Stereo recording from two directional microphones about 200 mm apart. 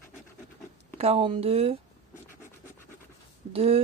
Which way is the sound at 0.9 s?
30° right (ahead or behind).